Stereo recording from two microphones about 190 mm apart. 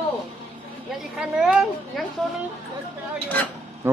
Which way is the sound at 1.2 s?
5° right (ahead or behind).